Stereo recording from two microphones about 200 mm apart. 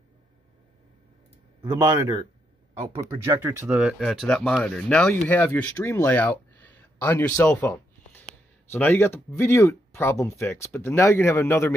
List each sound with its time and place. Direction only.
1.6 s speech: 15° right (ahead or behind); by 11.7 s 10° left (ahead or behind)